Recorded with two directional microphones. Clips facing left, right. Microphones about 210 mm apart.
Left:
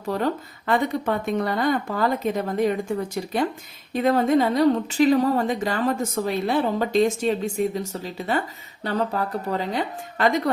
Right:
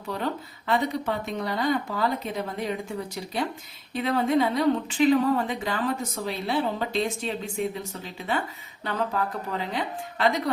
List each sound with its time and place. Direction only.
0.7 s speech: 50° left (ahead or behind)
3.9 s a woman's voice: 45° left (ahead or behind)